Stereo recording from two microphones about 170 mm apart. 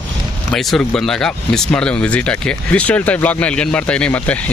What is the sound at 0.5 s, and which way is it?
Speech, centre (ahead or behind).